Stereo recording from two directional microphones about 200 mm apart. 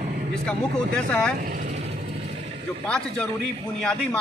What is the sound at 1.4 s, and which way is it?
Vehicle, 45° right (ahead or behind).